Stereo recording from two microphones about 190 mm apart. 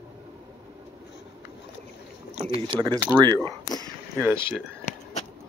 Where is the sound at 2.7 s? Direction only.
25° right (ahead or behind).